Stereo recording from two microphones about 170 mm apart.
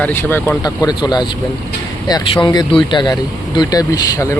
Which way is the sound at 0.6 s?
25° left (ahead or behind).